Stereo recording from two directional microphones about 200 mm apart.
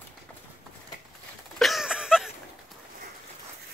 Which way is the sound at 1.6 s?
Centre (ahead or behind).